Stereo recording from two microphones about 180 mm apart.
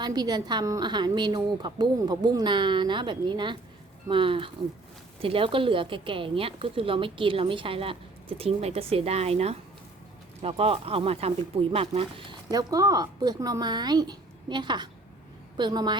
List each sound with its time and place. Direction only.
0.0 s speech: 20° right (ahead or behind)